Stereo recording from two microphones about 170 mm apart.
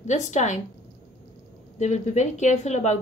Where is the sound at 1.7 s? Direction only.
40° left (ahead or behind).